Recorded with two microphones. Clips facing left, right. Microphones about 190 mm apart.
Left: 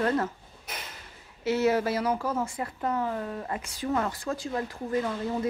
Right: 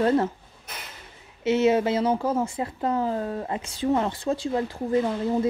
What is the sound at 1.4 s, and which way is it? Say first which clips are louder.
Speech: right 4 dB; 20° right (ahead or behind).